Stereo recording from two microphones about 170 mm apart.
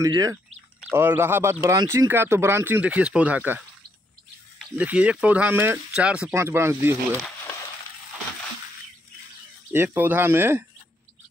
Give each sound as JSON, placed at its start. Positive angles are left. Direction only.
{"t": 0.0, "sound": "speech", "side_deg": -20}
{"t": 9.7, "sound": "speech", "side_deg": -10}